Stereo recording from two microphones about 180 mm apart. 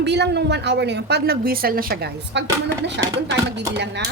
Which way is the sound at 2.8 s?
75° right (ahead or behind).